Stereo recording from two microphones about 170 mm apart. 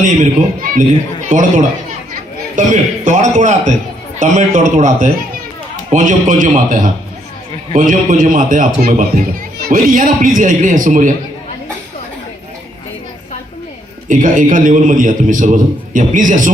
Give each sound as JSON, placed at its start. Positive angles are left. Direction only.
{"t": 0.0, "sound": "a man's voice", "side_deg": -50}
{"t": 14.1, "sound": "a man's voice", "side_deg": -50}